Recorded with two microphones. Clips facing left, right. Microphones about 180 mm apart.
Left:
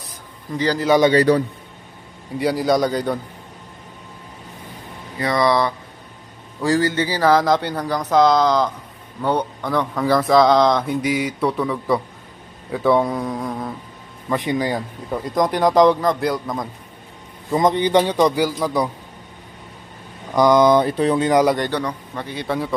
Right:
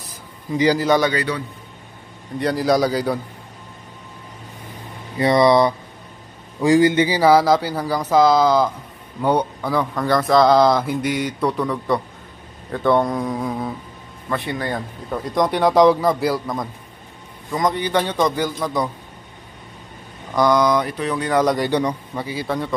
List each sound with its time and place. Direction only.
0.5 s speech: 10° right (ahead or behind)
1.1 s a man's voice: 40° left (ahead or behind)
2.3 s speech: 5° left (ahead or behind)
5.2 s speech: 25° right (ahead or behind); by 13.7 s centre (ahead or behind)
14.3 s speech: 15° left (ahead or behind); by 16.6 s centre (ahead or behind)
17.5 s a man's voice: 25° left (ahead or behind); by 18.9 s 10° left (ahead or behind)
20.3 s speech: 20° left (ahead or behind)
21.5 s speech: 15° right (ahead or behind)